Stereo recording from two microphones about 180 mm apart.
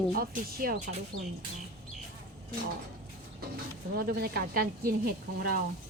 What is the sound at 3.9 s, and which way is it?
Speech, 60° right (ahead or behind).